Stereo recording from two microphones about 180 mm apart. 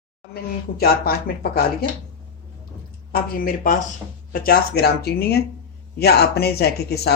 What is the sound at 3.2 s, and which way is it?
Speech, 55° left (ahead or behind).